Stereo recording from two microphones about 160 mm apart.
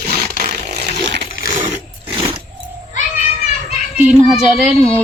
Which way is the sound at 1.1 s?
90° right.